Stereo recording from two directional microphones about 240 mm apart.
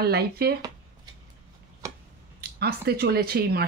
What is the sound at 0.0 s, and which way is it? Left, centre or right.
Speech, right.